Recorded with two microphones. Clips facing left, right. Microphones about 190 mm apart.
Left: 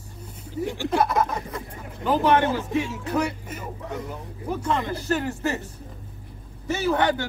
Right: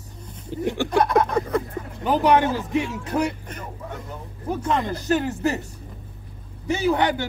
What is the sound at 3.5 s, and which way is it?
Speech, 5° left (ahead or behind).